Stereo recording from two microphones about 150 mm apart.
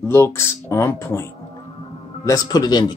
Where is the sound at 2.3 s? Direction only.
25° left (ahead or behind).